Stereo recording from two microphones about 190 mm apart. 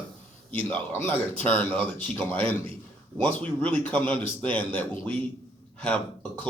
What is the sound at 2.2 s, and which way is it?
Speech, 30° right (ahead or behind).